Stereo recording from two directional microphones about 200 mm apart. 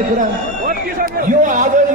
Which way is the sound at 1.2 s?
40° right (ahead or behind).